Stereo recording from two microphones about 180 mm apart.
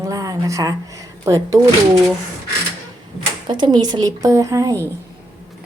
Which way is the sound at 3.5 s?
25° right (ahead or behind).